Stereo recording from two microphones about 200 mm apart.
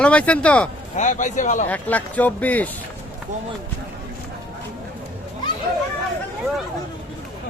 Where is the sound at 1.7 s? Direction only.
10° left (ahead or behind).